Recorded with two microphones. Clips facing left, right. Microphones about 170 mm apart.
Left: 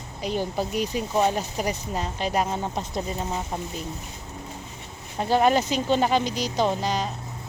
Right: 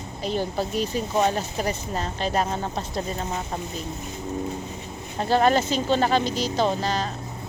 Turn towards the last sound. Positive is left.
turn(degrees=15)  # may be behind; listen again after turning